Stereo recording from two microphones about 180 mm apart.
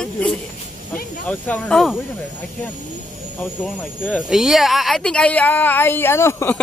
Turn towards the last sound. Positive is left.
turn(degrees=15)  # may be behind; listen again after turning